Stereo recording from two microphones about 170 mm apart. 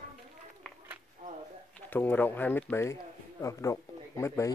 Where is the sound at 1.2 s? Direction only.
50° right (ahead or behind).